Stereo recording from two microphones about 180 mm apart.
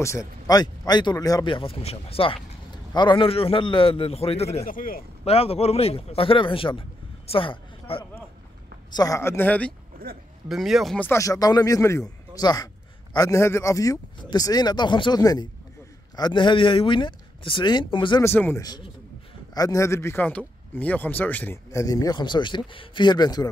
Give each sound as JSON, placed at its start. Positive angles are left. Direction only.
{"t": 0.0, "sound": "a man's voice", "side_deg": 15}
{"t": 4.6, "sound": "a man's voice", "side_deg": 50}
{"t": 5.2, "sound": "a man's voice", "side_deg": 35}
{"t": 8.9, "sound": "speech", "side_deg": 20}
{"t": 10.0, "sound": "speech", "side_deg": -55}
{"t": 10.5, "sound": "speech", "side_deg": 0}
{"t": 11.1, "sound": "speech", "side_deg": 15}
{"t": 18.2, "sound": "speech", "side_deg": 10}